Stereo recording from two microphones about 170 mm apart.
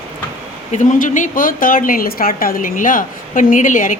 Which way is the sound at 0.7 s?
50° left (ahead or behind).